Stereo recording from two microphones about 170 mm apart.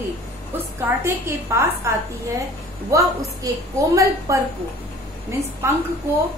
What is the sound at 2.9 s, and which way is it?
A woman's voice, 20° right (ahead or behind).